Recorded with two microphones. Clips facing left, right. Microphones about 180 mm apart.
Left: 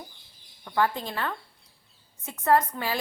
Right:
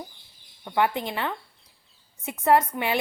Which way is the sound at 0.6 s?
20° right (ahead or behind).